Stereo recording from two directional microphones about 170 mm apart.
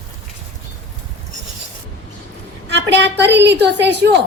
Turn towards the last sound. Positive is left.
turn(degrees=-85)